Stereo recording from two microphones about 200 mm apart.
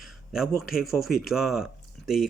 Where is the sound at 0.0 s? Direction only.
Centre (ahead or behind).